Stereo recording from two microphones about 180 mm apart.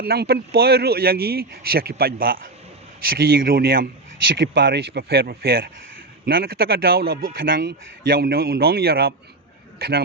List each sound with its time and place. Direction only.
0.0 s a man's voice: 60° right (ahead or behind)
4.4 s a man's voice: 70° right (ahead or behind)